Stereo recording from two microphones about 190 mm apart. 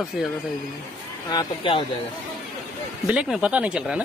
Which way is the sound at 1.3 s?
25° left (ahead or behind).